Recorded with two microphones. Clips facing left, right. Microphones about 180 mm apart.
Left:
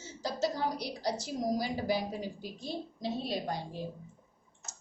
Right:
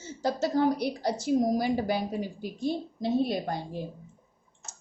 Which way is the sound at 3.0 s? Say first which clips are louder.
Right 8 dB; 55° right (ahead or behind).